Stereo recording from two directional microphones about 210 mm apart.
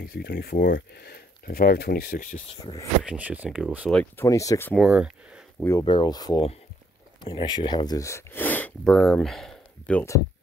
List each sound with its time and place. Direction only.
0.0 s speech: 50° left (ahead or behind)
2.5 s speech: 20° left (ahead or behind)
3.0 s speech: 5° right (ahead or behind)
3.9 s speech: 10° left (ahead or behind)
4.7 s speech: 5° right (ahead or behind)
5.6 s speech: 15° left (ahead or behind)